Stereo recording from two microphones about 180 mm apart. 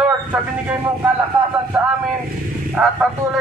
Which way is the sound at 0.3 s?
10° right (ahead or behind).